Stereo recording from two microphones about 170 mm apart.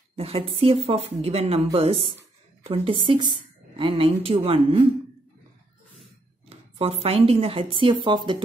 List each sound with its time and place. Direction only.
0.1 s a woman's voice: 35° right (ahead or behind)
6.5 s speech: 35° right (ahead or behind)